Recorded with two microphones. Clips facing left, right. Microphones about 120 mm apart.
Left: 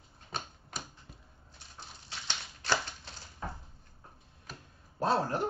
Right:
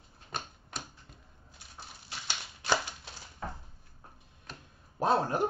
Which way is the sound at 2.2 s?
10° right (ahead or behind).